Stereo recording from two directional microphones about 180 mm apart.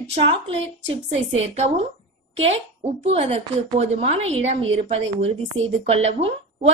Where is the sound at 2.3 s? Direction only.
35° right (ahead or behind).